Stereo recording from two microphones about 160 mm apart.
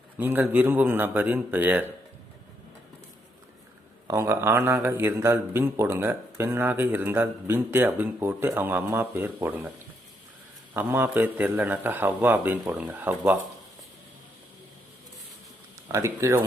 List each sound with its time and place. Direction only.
0.2 s a man's voice: 10° right (ahead or behind)
4.0 s a man's voice: 20° right (ahead or behind)
10.8 s a man's voice: 15° right (ahead or behind)
15.9 s a man's voice: 20° right (ahead or behind)